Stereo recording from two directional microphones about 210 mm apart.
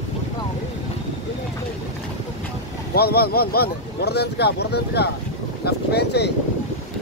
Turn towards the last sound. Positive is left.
turn(degrees=50)  # may be behind; listen again after turning